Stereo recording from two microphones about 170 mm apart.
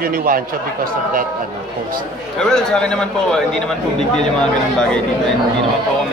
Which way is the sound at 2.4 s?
5° left (ahead or behind).